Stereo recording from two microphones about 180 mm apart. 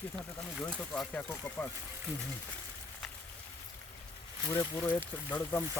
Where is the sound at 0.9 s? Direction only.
5° left (ahead or behind).